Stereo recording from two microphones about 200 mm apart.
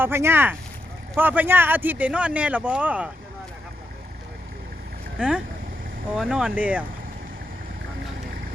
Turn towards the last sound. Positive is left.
turn(degrees=-10)  # may be behind; listen again after turning